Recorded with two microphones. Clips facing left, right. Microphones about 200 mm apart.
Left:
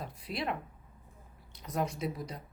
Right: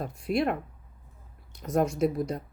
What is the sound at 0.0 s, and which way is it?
Speech, 50° right (ahead or behind).